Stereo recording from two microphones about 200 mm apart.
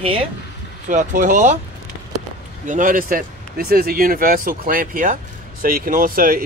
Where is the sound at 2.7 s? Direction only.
40° right (ahead or behind).